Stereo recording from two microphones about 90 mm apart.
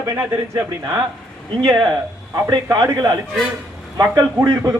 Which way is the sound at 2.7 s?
45° right (ahead or behind).